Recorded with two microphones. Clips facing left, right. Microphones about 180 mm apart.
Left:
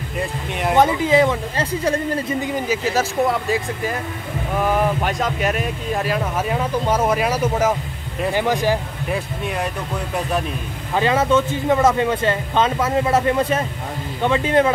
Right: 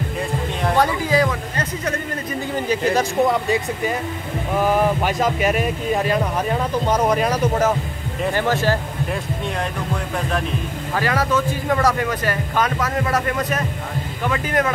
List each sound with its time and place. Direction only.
0.7 s speech: 20° left (ahead or behind)
2.4 s speech: 10° left (ahead or behind)
11.0 s speech: 25° left (ahead or behind)